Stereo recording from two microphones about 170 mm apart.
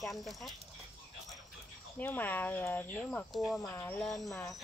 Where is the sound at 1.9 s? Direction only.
10° left (ahead or behind).